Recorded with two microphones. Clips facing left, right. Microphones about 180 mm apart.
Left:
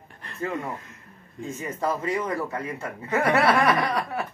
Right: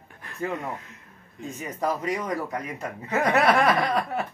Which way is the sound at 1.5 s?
15° right (ahead or behind).